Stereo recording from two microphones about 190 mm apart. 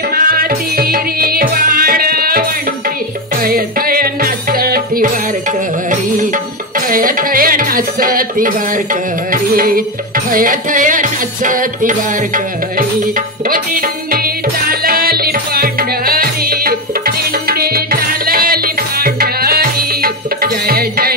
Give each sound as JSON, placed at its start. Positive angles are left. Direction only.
{"t": 0.1, "sound": "music", "side_deg": -50}
{"t": 3.4, "sound": "music", "side_deg": -50}
{"t": 6.9, "sound": "music", "side_deg": -45}